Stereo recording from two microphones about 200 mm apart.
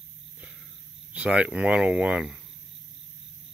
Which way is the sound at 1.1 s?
5° right (ahead or behind).